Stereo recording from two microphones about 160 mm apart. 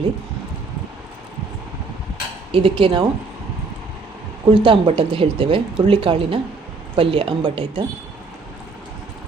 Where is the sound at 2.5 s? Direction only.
35° right (ahead or behind).